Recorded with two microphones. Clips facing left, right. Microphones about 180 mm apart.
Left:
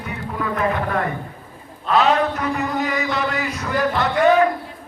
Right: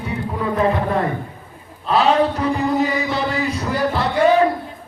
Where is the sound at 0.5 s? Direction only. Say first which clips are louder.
Right 3 dB; 30° right (ahead or behind).